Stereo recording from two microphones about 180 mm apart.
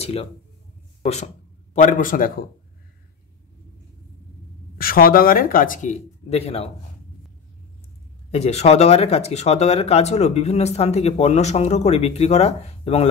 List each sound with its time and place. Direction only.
0.0 s speech: 35° left (ahead or behind); by 2.4 s 50° left (ahead or behind)
4.7 s speech: 55° left (ahead or behind); by 6.7 s 35° left (ahead or behind)
8.3 s speech: 35° left (ahead or behind)